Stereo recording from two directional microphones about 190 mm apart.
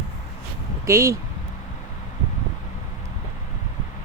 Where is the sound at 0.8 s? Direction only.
15° right (ahead or behind).